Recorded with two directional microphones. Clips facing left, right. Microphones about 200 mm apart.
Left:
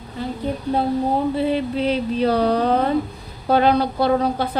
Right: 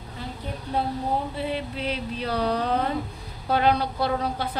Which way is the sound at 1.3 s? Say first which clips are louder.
Left 9 dB; 30° left (ahead or behind).